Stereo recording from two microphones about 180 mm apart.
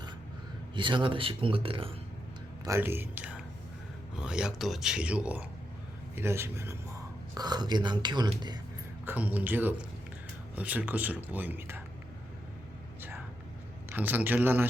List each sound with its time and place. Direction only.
0.8 s speech: 25° right (ahead or behind)
2.6 s speech: 15° right (ahead or behind)
9.0 s speech: 10° right (ahead or behind)
13.0 s a sound: 10° right (ahead or behind)
13.9 s speech: 10° right (ahead or behind)